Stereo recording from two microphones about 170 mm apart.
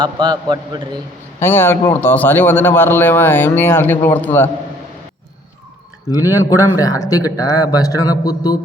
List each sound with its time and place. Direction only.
0.0 s a man's voice: 25° right (ahead or behind)
1.4 s a man's voice: 10° left (ahead or behind)
6.3 s a man's voice: 20° left (ahead or behind)